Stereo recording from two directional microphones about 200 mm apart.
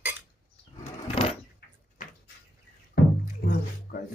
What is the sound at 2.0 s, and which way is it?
Cupboard open or close, 40° left (ahead or behind).